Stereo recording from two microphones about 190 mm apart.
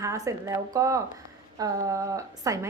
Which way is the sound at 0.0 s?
15° right (ahead or behind).